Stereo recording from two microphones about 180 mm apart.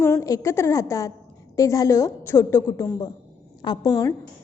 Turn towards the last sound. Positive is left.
turn(degrees=20)  # may be behind; listen again after turning